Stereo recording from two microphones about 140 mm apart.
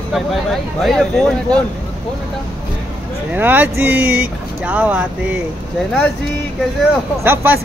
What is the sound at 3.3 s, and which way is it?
Speech, 10° right (ahead or behind).